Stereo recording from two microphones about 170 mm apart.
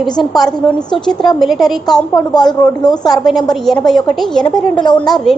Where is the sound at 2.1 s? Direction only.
25° left (ahead or behind).